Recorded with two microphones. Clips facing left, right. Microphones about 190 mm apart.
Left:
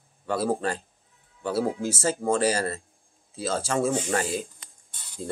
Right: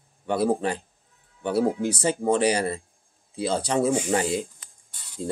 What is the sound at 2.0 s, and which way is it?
Speech, 20° right (ahead or behind).